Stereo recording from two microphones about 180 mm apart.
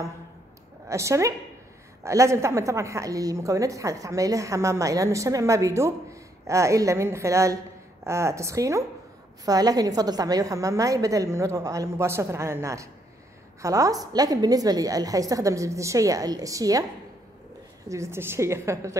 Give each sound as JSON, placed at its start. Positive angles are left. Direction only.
{"t": 0.8, "sound": "a woman's voice", "side_deg": -15}
{"t": 17.8, "sound": "a woman's voice", "side_deg": -15}